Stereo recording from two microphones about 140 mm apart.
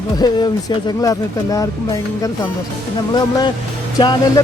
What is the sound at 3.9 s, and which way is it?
Speech, 30° left (ahead or behind).